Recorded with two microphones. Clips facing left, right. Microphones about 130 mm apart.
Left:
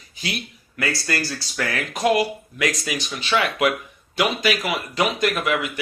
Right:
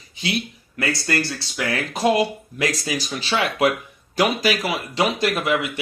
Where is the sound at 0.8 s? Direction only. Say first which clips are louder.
Right 2 dB; 25° right (ahead or behind).